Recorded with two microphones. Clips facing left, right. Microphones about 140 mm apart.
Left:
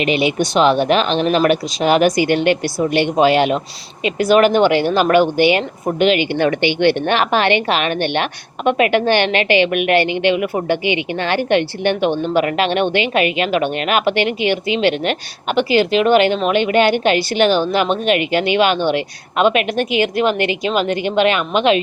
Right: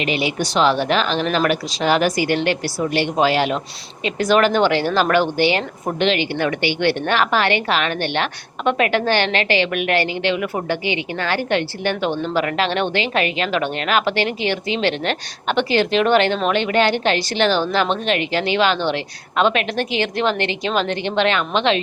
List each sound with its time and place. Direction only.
0.0 s a woman's voice: 20° left (ahead or behind)
6.3 s a woman's voice: 35° left (ahead or behind)
6.6 s a woman's voice: 20° left (ahead or behind)